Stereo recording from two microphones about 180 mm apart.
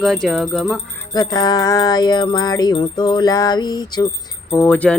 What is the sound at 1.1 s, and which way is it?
Jingle bell, 20° left (ahead or behind).